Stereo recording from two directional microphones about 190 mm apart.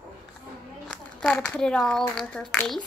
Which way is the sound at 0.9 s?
5° left (ahead or behind).